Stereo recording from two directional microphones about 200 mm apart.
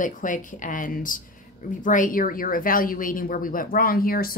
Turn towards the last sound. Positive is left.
turn(degrees=45)  # may be behind; listen again after turning